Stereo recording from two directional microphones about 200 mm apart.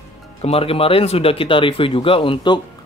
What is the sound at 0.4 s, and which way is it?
Speech, 30° left (ahead or behind).